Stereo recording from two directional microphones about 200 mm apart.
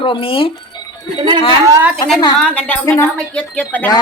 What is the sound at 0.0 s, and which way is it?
Speech, 25° left (ahead or behind).